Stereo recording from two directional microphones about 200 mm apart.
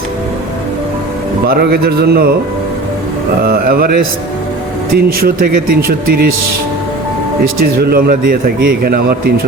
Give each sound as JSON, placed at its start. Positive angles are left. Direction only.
{"t": 1.5, "sound": "speech", "side_deg": -50}
{"t": 3.4, "sound": "speech", "side_deg": -50}
{"t": 7.6, "sound": "speech", "side_deg": -50}